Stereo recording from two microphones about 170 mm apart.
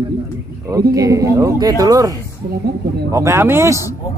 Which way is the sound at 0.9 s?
20° right (ahead or behind).